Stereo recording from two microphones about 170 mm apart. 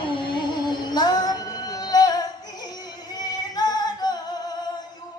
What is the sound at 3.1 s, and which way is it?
Singing, 25° left (ahead or behind).